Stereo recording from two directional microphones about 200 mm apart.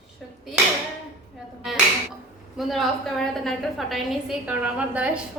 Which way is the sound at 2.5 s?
Centre (ahead or behind).